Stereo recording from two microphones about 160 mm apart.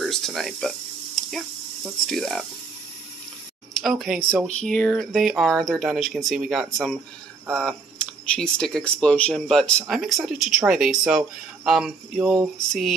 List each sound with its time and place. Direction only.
0.0 s a sound: centre (ahead or behind)
2.0 s speech: centre (ahead or behind)
3.8 s speech: centre (ahead or behind)